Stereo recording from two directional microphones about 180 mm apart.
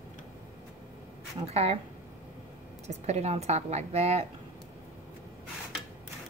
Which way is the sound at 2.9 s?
35° right (ahead or behind).